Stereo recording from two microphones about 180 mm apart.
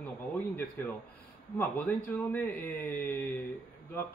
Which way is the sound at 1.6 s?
10° left (ahead or behind).